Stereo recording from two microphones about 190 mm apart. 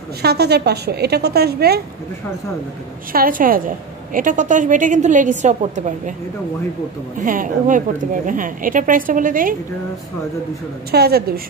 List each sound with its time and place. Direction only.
0.2 s a woman's voice: 60° right (ahead or behind)
3.1 s a woman's voice: 45° right (ahead or behind)
7.2 s a woman's voice: 45° right (ahead or behind)
10.9 s a woman's voice: 55° right (ahead or behind)